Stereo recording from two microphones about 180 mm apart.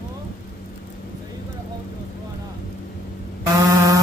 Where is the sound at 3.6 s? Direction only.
20° right (ahead or behind).